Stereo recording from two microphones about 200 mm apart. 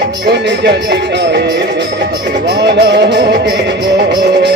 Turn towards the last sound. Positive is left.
turn(degrees=-60)  # may be behind; listen again after turning